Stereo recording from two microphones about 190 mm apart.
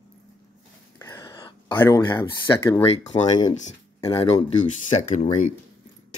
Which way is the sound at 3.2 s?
20° left (ahead or behind).